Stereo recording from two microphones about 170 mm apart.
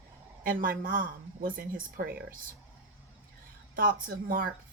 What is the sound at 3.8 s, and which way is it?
Speech, 55° right (ahead or behind).